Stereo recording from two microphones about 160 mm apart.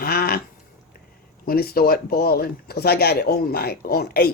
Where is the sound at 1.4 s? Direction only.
70° left (ahead or behind).